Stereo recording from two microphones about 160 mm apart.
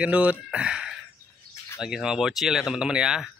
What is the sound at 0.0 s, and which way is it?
Speech, 10° right (ahead or behind).